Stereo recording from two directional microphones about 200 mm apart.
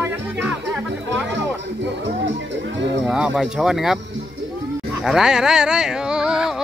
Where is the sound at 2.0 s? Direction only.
60° right (ahead or behind).